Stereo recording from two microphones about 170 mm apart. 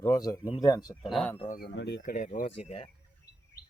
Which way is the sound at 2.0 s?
45° left (ahead or behind).